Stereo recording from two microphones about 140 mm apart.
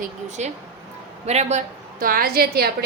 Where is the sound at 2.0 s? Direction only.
90° right.